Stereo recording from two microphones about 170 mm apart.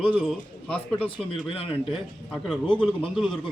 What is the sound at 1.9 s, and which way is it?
A man's voice, centre (ahead or behind).